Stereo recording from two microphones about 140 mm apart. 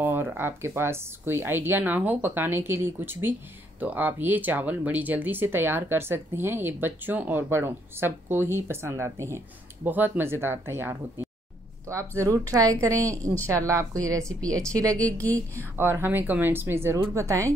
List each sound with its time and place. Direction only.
0.0 s speech: 15° right (ahead or behind)
12.2 s speech: 25° right (ahead or behind)
15.0 s a woman's voice: 10° left (ahead or behind)
15.5 s speech: 15° right (ahead or behind)